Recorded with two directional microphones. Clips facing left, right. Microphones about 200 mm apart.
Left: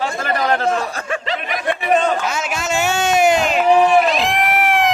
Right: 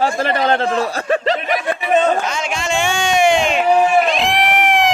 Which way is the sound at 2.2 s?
5° left (ahead or behind).